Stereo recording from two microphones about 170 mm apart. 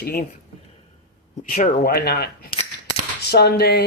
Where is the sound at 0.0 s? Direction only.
70° left (ahead or behind).